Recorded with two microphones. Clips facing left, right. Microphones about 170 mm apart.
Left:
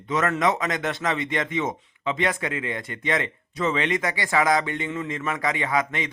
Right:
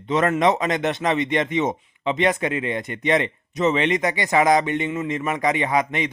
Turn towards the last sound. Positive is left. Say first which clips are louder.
# right 4 dB
turn(degrees=-20)  # may be behind; listen again after turning